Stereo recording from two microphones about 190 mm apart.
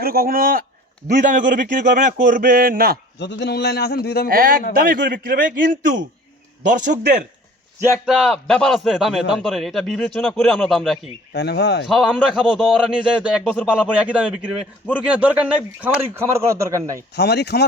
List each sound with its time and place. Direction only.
0.0 s speech: 50° right (ahead or behind)
3.2 s a man's voice: 65° left (ahead or behind)
4.3 s speech: 50° right (ahead or behind)
7.8 s speech: 10° right (ahead or behind)
8.1 s a man's voice: centre (ahead or behind)
11.3 s a man's voice: 60° left (ahead or behind)
11.9 s a man's voice: centre (ahead or behind)
17.2 s a man's voice: 60° left (ahead or behind)